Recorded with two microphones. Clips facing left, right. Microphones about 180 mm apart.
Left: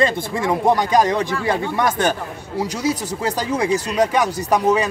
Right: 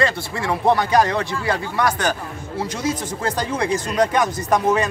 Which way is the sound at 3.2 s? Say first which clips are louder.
Left 2 dB; 10° left (ahead or behind).